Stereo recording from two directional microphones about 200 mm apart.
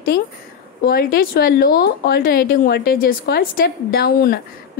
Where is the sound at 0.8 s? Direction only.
50° left (ahead or behind).